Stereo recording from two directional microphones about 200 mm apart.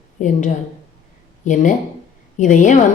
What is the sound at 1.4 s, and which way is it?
A woman's voice, 40° left (ahead or behind).